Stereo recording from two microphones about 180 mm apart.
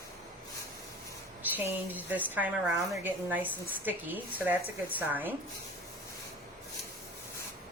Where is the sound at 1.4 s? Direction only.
10° right (ahead or behind).